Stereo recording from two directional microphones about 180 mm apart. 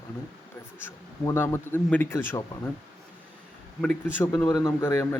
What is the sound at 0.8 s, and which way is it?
Speech, 15° left (ahead or behind).